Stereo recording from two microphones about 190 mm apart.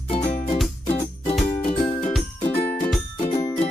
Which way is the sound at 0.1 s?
30° left (ahead or behind).